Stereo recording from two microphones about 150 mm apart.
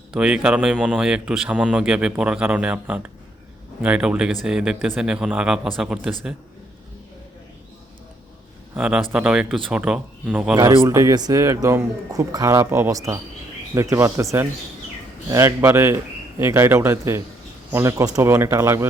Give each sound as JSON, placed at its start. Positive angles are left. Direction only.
{"t": 0.2, "sound": "speech", "side_deg": -5}
{"t": 8.7, "sound": "speech", "side_deg": -5}
{"t": 10.5, "sound": "a man's voice", "side_deg": -20}